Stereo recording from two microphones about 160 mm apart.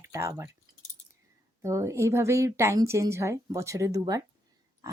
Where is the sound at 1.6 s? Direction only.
20° right (ahead or behind).